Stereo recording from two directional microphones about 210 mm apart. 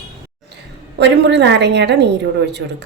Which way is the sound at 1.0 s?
55° right (ahead or behind).